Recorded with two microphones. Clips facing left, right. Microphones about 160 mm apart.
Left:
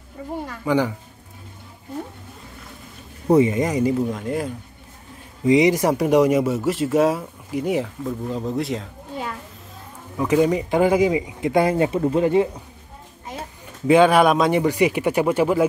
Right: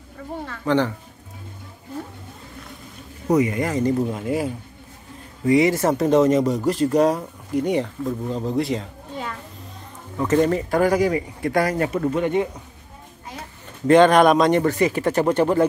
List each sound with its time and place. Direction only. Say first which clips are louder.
0.5 s speech: right 1 dB; 10° left (ahead or behind)
3.3 s speech: left 3 dB; 25° left (ahead or behind)
4.1 s speech: right 1 dB; 5° right (ahead or behind)
5.4 s speech: left 1 dB; 20° left (ahead or behind)
13.8 s speech: right 1 dB; 5° left (ahead or behind)